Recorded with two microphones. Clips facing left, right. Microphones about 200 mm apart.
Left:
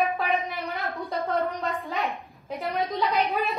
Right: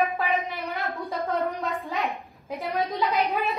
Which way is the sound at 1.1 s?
Centre (ahead or behind).